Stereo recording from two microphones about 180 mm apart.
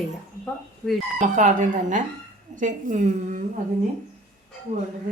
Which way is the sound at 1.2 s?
45° right (ahead or behind).